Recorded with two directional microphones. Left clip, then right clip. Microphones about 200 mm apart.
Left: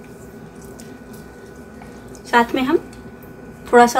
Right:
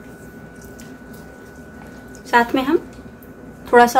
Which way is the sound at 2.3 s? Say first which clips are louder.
Even; 5° right (ahead or behind).